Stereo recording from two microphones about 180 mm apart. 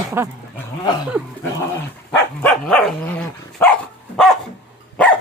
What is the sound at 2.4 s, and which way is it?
Dog, 5° left (ahead or behind).